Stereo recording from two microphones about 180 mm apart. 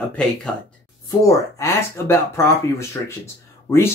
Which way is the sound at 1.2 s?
15° left (ahead or behind).